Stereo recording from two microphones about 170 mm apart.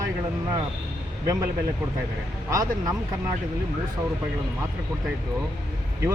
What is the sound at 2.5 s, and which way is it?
Speech, 20° right (ahead or behind).